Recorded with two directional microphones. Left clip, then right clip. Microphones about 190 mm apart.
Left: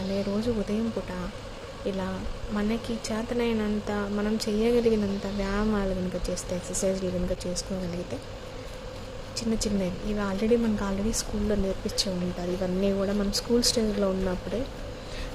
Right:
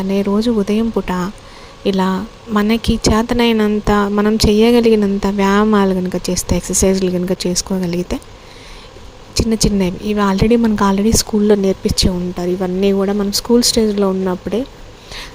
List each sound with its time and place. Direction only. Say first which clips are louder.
0.3 s speech: right 13 dB; 50° right (ahead or behind)
9.3 s speech: right 13 dB; 50° right (ahead or behind)